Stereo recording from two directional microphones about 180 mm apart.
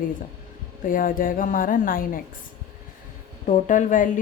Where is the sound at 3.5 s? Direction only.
45° left (ahead or behind).